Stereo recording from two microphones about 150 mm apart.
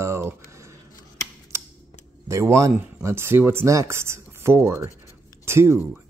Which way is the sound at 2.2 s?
20° right (ahead or behind).